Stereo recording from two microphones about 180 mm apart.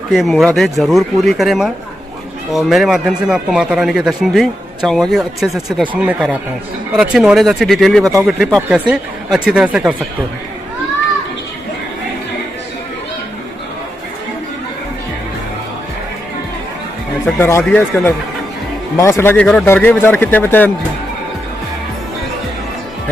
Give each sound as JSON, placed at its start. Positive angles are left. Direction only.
{"t": 0.1, "sound": "speech", "side_deg": 0}
{"t": 8.0, "sound": "speech", "side_deg": -20}
{"t": 8.3, "sound": "speech", "side_deg": 0}
{"t": 17.4, "sound": "speech", "side_deg": 15}